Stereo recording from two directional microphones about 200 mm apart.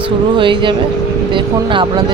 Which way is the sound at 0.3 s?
25° right (ahead or behind).